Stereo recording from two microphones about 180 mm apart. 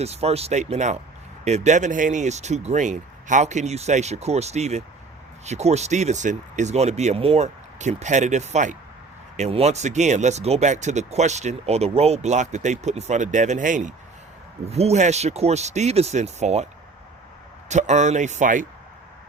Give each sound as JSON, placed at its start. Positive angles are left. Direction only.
{"t": 0.0, "sound": "speech", "side_deg": -35}
{"t": 17.7, "sound": "speech", "side_deg": -40}